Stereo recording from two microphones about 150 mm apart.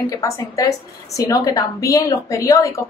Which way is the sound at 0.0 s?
25° left (ahead or behind).